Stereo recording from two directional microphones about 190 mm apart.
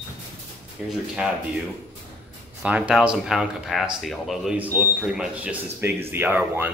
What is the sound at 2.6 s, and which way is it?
Speech, 5° right (ahead or behind).